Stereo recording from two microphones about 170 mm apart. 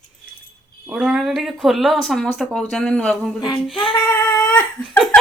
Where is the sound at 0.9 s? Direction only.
5° right (ahead or behind).